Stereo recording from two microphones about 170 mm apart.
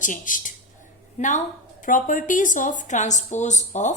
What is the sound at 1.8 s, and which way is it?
A woman's voice, 50° left (ahead or behind).